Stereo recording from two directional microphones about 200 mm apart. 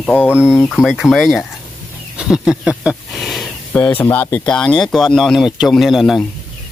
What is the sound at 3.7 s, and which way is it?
Speech, 10° left (ahead or behind).